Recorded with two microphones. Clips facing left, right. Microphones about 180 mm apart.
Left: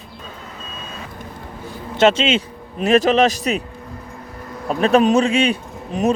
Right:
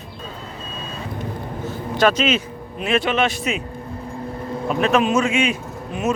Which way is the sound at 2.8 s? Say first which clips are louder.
Left 6 dB; 40° left (ahead or behind).